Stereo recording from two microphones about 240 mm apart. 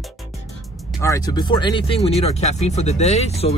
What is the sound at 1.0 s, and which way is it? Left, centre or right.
Speech, centre.